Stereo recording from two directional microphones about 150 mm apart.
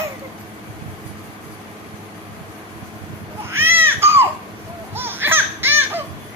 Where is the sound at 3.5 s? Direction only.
15° right (ahead or behind).